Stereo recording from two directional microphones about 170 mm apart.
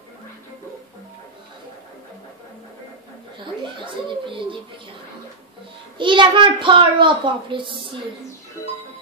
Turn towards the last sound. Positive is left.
turn(degrees=-30)  # may be behind; listen again after turning